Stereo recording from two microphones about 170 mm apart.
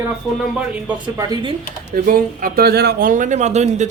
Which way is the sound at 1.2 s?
25° right (ahead or behind).